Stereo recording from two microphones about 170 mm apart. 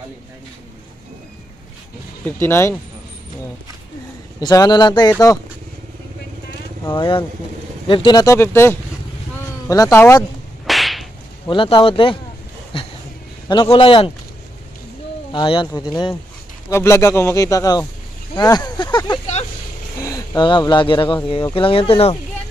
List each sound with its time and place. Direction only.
2.2 s a man's voice: 15° left (ahead or behind)
4.4 s speech: 20° left (ahead or behind)
6.8 s speech: 30° left (ahead or behind)
10.7 s whip: centre (ahead or behind)
11.4 s speech: 30° left (ahead or behind)
12.7 s a sound: 35° left (ahead or behind)
13.5 s speech: 30° left (ahead or behind)
15.3 s a man's voice: 30° left (ahead or behind)